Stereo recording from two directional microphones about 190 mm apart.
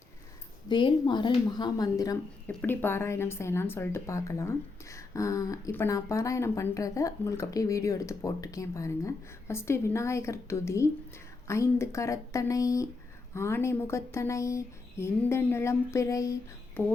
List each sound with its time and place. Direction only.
0.7 s speech: 25° left (ahead or behind)
2.5 s a woman's voice: 10° left (ahead or behind)